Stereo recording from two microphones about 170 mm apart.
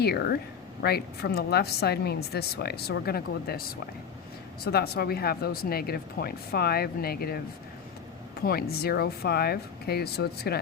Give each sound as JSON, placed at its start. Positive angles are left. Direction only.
{"t": 0.0, "sound": "a woman's voice", "side_deg": 70}
{"t": 8.4, "sound": "a woman's voice", "side_deg": 65}